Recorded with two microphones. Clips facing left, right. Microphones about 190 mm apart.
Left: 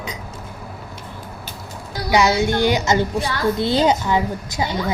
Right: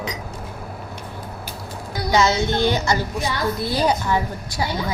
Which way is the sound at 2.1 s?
15° left (ahead or behind).